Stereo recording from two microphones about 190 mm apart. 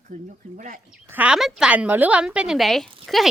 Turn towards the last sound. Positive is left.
turn(degrees=0)  # may be behind; listen again after turning